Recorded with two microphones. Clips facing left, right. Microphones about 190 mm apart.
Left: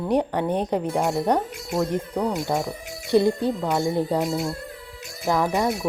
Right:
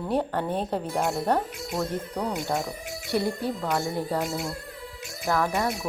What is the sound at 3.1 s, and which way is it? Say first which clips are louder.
Speech: left 7 dB; 20° left (ahead or behind).